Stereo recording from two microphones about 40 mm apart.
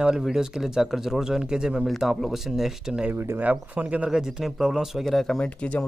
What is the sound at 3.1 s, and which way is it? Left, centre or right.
Speech, right.